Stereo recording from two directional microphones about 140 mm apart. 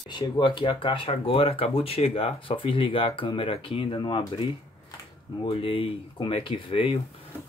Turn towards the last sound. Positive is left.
turn(degrees=40)  # may be behind; listen again after turning